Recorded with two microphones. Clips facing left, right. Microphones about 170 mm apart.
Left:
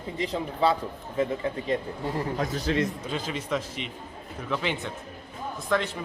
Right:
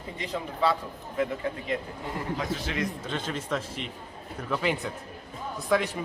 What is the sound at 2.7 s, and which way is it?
Speech, 35° left (ahead or behind).